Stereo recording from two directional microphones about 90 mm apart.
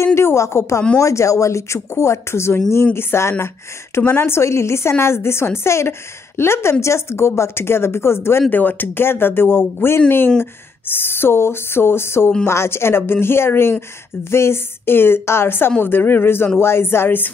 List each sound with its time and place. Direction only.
0.0 s a woman's voice: 30° left (ahead or behind)